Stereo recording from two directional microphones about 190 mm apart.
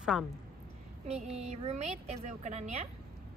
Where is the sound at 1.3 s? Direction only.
35° right (ahead or behind).